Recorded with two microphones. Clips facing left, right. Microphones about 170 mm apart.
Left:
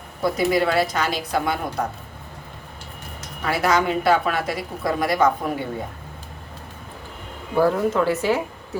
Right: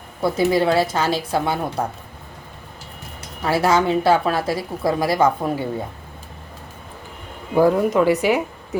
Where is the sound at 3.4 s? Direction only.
30° right (ahead or behind).